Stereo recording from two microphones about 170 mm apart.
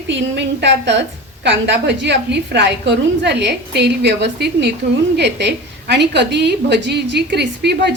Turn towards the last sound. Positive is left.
turn(degrees=-85)